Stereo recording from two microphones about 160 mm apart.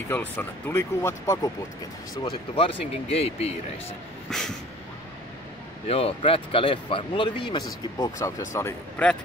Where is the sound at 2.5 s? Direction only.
35° left (ahead or behind).